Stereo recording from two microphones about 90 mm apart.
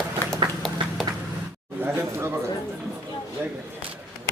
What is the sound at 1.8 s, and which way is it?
Speech, 25° right (ahead or behind).